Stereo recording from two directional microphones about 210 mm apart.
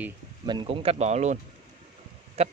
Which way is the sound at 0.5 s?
25° right (ahead or behind).